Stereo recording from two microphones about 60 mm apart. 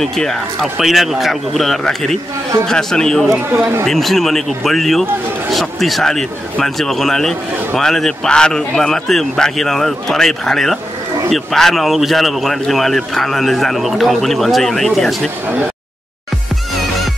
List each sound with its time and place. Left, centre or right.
0.0 s speech: centre
0.7 s a man's voice: centre